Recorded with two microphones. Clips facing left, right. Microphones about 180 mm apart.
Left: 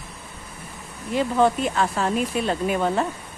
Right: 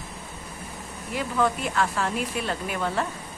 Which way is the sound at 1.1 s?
25° left (ahead or behind).